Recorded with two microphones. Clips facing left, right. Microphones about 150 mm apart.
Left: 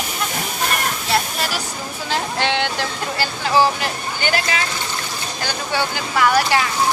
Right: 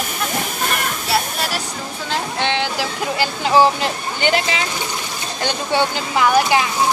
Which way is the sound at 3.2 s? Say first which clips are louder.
Right 3 dB; 20° right (ahead or behind).